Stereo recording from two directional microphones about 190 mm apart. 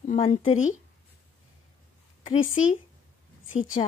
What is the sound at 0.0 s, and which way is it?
Speech, 40° left (ahead or behind).